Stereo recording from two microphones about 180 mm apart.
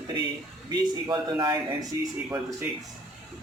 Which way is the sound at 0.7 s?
25° right (ahead or behind).